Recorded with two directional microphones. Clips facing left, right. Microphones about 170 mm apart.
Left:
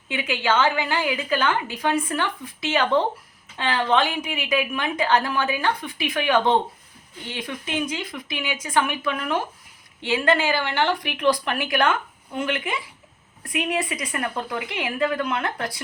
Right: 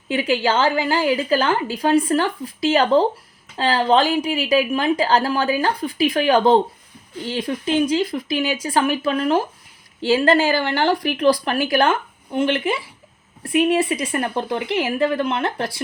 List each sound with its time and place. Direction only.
0.1 s a woman's voice: 35° right (ahead or behind)